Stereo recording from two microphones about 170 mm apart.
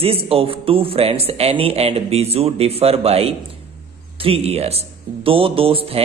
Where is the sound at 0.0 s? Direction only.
35° right (ahead or behind).